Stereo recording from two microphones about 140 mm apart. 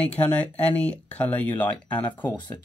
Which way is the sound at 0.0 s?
10° left (ahead or behind).